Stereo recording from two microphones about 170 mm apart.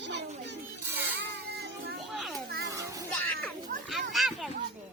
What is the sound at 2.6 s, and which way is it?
Music, 20° right (ahead or behind).